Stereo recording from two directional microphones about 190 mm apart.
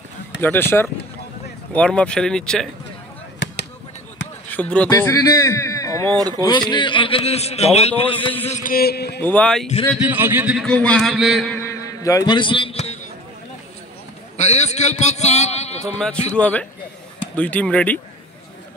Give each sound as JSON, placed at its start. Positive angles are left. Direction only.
{"t": 0.4, "sound": "speech", "side_deg": 10}
{"t": 4.5, "sound": "a man's voice", "side_deg": 5}
{"t": 6.1, "sound": "speech", "side_deg": -20}
{"t": 6.7, "sound": "a man's voice", "side_deg": 25}
{"t": 8.5, "sound": "a sound", "side_deg": 45}
{"t": 9.2, "sound": "speech", "side_deg": 10}
{"t": 9.9, "sound": "speech", "side_deg": -10}
{"t": 10.7, "sound": "speech", "side_deg": 5}
{"t": 11.6, "sound": "a sound", "side_deg": 15}
{"t": 14.3, "sound": "a man's voice", "side_deg": 35}
{"t": 16.0, "sound": "speech", "side_deg": 5}